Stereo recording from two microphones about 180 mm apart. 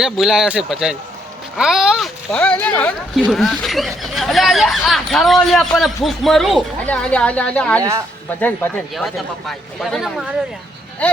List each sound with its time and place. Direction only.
0.0 s speech: 5° right (ahead or behind)
7.8 s speech: 20° right (ahead or behind)
8.4 s speech: 10° left (ahead or behind)
9.0 s speech: centre (ahead or behind)